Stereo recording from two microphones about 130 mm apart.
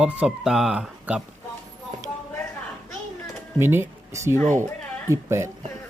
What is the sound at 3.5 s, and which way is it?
Speech, 20° right (ahead or behind).